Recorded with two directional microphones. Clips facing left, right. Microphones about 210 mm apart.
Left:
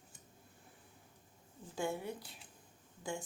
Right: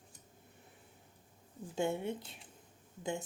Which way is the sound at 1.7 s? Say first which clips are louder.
Right 4 dB; 25° right (ahead or behind).